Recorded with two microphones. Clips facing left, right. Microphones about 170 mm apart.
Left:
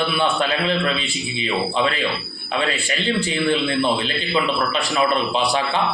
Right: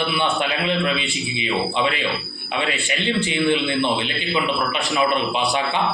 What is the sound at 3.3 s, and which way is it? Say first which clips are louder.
Speech: right 1 dB; 25° right (ahead or behind).